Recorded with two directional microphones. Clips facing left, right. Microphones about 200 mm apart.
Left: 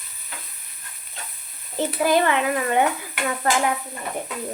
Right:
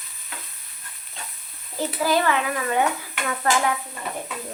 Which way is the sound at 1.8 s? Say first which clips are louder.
Left 3 dB; 20° left (ahead or behind).